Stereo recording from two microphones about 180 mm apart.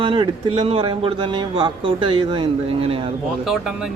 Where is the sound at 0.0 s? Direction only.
25° right (ahead or behind).